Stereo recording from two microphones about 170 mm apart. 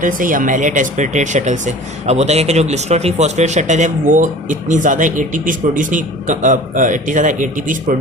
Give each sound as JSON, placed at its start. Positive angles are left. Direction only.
{"t": 0.0, "sound": "speech", "side_deg": -50}